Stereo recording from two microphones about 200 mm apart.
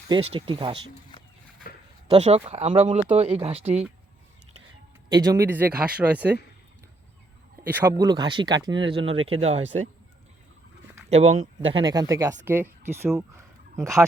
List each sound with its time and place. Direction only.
0.1 s speech: 25° right (ahead or behind)
2.0 s speech: 30° right (ahead or behind)
5.0 s speech: 20° right (ahead or behind)
7.7 s speech: 15° right (ahead or behind); by 9.9 s 35° right (ahead or behind)
11.1 s speech: 35° right (ahead or behind)
11.8 s speech: 20° right (ahead or behind)